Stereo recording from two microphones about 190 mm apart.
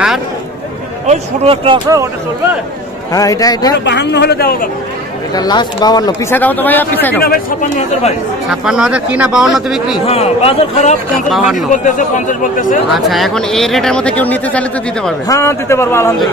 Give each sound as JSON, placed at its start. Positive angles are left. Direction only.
{"t": 1.0, "sound": "speech", "side_deg": -35}
{"t": 3.1, "sound": "speech", "side_deg": 20}
{"t": 3.7, "sound": "a man's voice", "side_deg": 65}
{"t": 5.3, "sound": "speech", "side_deg": 20}
{"t": 6.3, "sound": "a man's voice", "side_deg": 10}
{"t": 7.2, "sound": "speech", "side_deg": 50}
{"t": 8.5, "sound": "speech", "side_deg": -5}
{"t": 10.0, "sound": "a man's voice", "side_deg": 30}
{"t": 11.2, "sound": "speech", "side_deg": 0}
{"t": 11.5, "sound": "speech", "side_deg": 45}
{"t": 12.9, "sound": "a man's voice", "side_deg": 0}